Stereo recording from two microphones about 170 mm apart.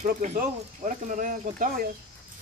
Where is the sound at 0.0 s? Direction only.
45° right (ahead or behind).